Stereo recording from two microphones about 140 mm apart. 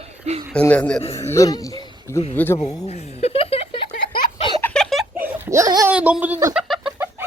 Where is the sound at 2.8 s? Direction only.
50° left (ahead or behind).